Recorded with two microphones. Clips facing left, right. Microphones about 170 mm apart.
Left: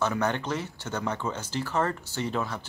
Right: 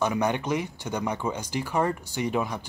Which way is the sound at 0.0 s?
15° right (ahead or behind).